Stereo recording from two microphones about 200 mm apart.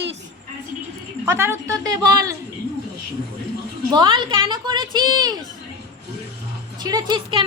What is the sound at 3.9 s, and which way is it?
A child's voice, 25° right (ahead or behind).